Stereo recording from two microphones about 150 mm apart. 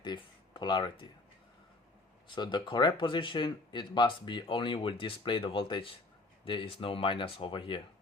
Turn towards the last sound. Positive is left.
turn(degrees=35)  # may be behind; listen again after turning